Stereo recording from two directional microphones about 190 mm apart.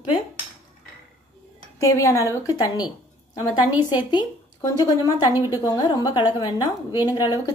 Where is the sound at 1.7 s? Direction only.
15° left (ahead or behind).